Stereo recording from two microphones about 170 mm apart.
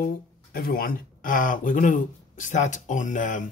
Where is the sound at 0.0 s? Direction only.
60° left (ahead or behind).